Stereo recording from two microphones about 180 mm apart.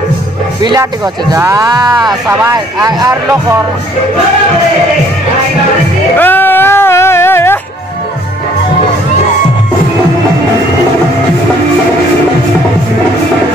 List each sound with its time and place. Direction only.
0.6 s speech: 25° right (ahead or behind)
6.1 s music: 10° left (ahead or behind)